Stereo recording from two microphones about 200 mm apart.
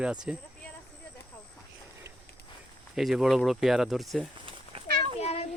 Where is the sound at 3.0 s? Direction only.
Centre (ahead or behind).